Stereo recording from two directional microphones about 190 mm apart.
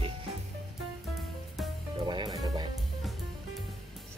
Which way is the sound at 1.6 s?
Centre (ahead or behind).